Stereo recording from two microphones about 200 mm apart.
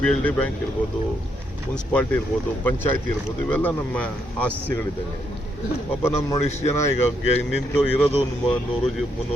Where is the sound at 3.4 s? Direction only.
5° left (ahead or behind).